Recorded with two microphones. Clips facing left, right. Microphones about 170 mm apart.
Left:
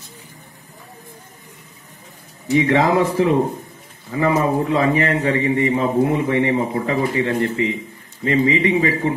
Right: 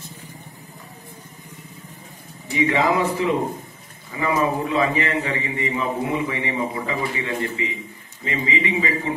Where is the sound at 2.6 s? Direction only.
50° left (ahead or behind).